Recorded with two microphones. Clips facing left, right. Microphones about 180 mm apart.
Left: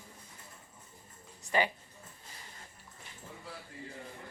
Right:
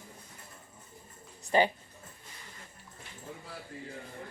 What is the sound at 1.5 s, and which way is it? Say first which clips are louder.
Speech: right 5 dB; 30° right (ahead or behind).